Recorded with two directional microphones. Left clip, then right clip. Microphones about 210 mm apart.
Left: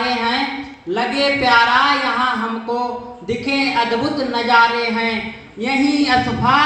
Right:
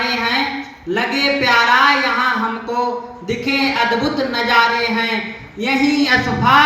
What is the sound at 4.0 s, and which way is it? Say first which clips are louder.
Speech: right 1 dB; 55° right (ahead or behind).